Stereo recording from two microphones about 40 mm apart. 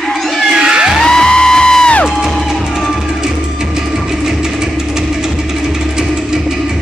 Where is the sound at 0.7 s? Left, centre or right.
Centre.